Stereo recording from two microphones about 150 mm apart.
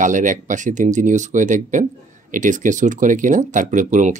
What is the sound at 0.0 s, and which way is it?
Speech, 60° right (ahead or behind).